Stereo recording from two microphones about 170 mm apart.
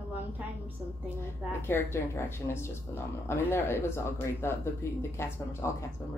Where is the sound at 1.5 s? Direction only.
15° left (ahead or behind).